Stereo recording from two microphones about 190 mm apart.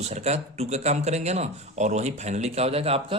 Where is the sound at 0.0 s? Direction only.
35° right (ahead or behind).